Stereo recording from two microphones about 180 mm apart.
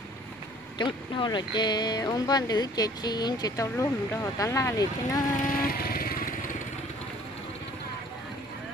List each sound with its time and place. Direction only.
0.7 s speech: 25° left (ahead or behind)
5.3 s vehicle: 45° left (ahead or behind)